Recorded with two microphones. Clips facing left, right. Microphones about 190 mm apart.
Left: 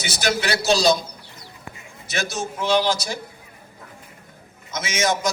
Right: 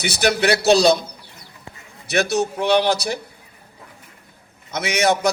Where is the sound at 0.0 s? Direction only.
60° right (ahead or behind).